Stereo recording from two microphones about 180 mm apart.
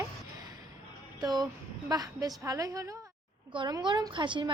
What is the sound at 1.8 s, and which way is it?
A woman's voice, 20° right (ahead or behind).